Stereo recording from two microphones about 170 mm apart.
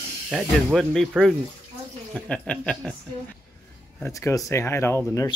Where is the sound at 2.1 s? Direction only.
5° left (ahead or behind).